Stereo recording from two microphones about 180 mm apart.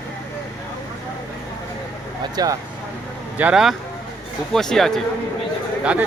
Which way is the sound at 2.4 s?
20° right (ahead or behind).